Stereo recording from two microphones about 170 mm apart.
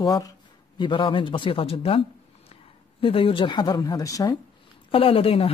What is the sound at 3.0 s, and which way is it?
Speech, 30° left (ahead or behind).